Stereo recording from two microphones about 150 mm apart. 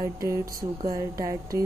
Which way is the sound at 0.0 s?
20° right (ahead or behind).